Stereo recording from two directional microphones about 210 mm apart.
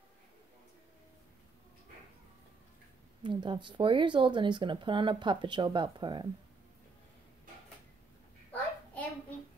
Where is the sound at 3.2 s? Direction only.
20° right (ahead or behind).